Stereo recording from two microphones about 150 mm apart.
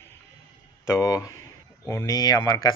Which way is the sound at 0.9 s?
20° left (ahead or behind).